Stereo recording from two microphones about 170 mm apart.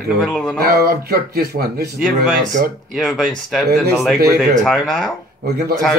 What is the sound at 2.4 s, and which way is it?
Speech, 50° right (ahead or behind).